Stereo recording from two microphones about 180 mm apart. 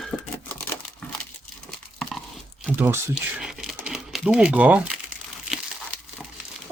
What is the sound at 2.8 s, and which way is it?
Speech, 15° right (ahead or behind).